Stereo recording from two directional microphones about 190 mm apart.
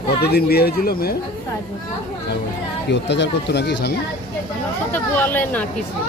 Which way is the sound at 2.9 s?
65° left (ahead or behind).